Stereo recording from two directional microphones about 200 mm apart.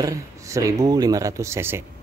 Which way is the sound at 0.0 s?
15° right (ahead or behind).